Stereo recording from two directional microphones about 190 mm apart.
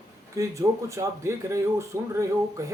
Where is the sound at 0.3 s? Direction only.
15° right (ahead or behind).